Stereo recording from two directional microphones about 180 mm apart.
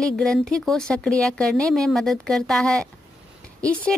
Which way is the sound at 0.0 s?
5° left (ahead or behind).